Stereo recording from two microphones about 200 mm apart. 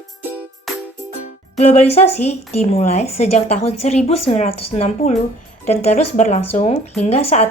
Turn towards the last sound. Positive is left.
turn(degrees=30)  # may be behind; listen again after turning